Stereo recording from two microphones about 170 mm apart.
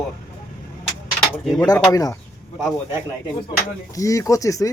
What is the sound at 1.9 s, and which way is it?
Speech, 20° left (ahead or behind).